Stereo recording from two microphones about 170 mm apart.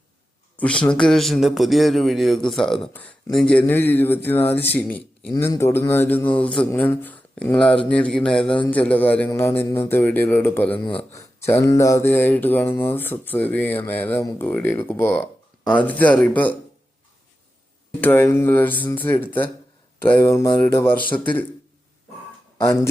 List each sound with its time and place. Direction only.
0.5 s a man's voice: 5° left (ahead or behind)
11.1 s a sound: 15° left (ahead or behind)
11.7 s speech: 20° left (ahead or behind)
18.0 s speech: 10° left (ahead or behind)
22.6 s speech: 15° left (ahead or behind)